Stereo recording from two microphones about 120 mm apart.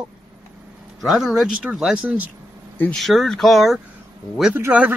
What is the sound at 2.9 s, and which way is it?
Speech, centre (ahead or behind).